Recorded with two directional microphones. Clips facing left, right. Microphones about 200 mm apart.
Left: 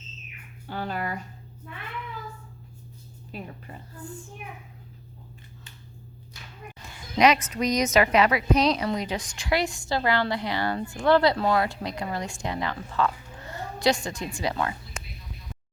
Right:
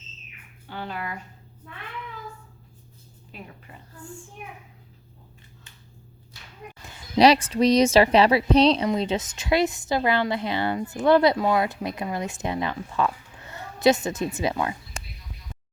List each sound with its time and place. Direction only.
0.7 s speech: 40° left (ahead or behind)
3.3 s speech: 40° left (ahead or behind)
7.2 s a woman's voice: 30° right (ahead or behind)